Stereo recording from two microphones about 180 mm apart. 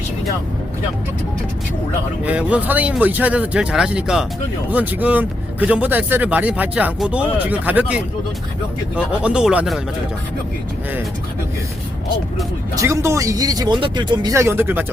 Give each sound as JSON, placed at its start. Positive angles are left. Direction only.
{"t": 2.2, "sound": "speech", "side_deg": -10}
{"t": 12.7, "sound": "speech", "side_deg": -15}